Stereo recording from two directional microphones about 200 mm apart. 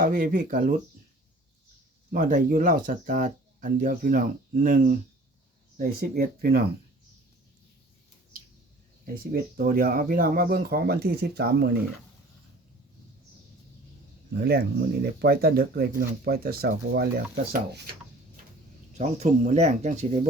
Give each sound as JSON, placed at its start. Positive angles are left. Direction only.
{"t": 0.0, "sound": "speech", "side_deg": -45}
{"t": 2.1, "sound": "speech", "side_deg": -45}
{"t": 9.3, "sound": "speech", "side_deg": -45}
{"t": 14.3, "sound": "speech", "side_deg": -55}
{"t": 18.9, "sound": "speech", "side_deg": -35}